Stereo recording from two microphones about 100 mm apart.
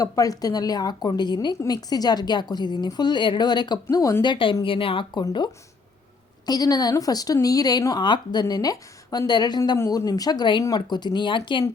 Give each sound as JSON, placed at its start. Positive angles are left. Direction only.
{"t": 0.0, "sound": "a woman's voice", "side_deg": 35}
{"t": 3.8, "sound": "speech", "side_deg": 30}
{"t": 4.2, "sound": "speech", "side_deg": 55}
{"t": 6.4, "sound": "a woman's voice", "side_deg": 40}
{"t": 9.7, "sound": "a woman's voice", "side_deg": 30}